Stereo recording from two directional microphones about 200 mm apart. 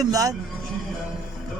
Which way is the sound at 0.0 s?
15° right (ahead or behind).